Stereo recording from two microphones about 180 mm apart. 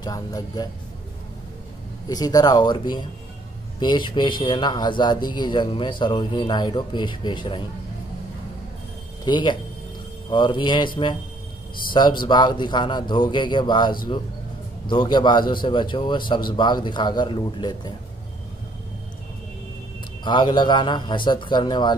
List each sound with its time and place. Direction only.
0.0 s speech: 20° left (ahead or behind)
2.0 s speech: 20° left (ahead or behind)
9.2 s speech: 25° left (ahead or behind)
11.9 s speech: 25° left (ahead or behind)
20.2 s speech: 25° left (ahead or behind)